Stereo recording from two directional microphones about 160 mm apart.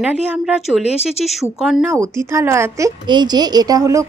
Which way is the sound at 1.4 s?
Centre (ahead or behind).